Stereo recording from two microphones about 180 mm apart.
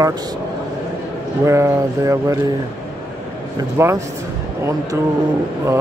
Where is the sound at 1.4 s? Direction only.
15° right (ahead or behind).